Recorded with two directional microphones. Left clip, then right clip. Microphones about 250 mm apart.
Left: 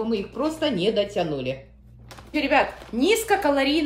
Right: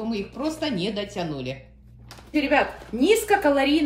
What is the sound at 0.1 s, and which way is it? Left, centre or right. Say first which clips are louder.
A woman's voice: left 3 dB; centre.